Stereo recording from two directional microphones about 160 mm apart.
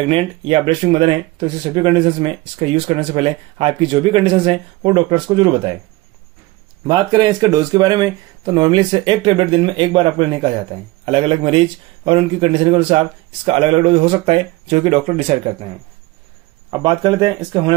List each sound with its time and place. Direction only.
0.1 s speech: 35° right (ahead or behind)
6.9 s speech: 25° right (ahead or behind)
16.7 s speech: 30° right (ahead or behind)